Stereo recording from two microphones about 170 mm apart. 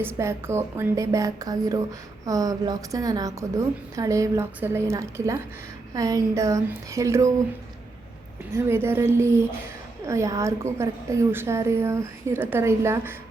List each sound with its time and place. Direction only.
0.0 s a woman's voice: 15° right (ahead or behind)
8.5 s a woman's voice: 15° right (ahead or behind)